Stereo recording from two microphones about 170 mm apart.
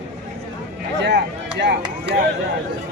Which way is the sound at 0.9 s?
90° right.